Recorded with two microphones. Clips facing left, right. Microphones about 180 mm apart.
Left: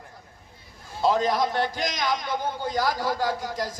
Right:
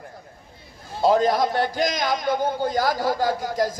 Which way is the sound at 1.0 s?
40° right (ahead or behind).